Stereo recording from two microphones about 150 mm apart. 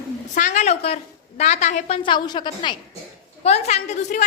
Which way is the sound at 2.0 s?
30° left (ahead or behind).